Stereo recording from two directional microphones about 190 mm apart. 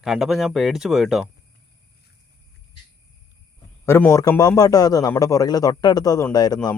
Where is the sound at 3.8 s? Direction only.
15° left (ahead or behind).